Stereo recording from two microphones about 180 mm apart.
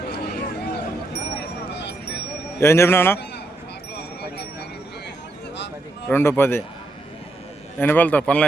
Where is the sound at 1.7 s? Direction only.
70° left (ahead or behind).